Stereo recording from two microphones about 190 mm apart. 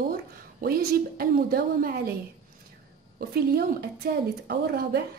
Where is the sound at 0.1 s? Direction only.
50° right (ahead or behind).